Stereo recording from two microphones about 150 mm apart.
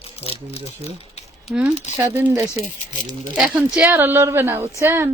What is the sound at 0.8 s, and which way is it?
Typewriter, 45° left (ahead or behind).